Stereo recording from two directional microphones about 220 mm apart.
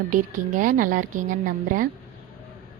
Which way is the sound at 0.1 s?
35° right (ahead or behind).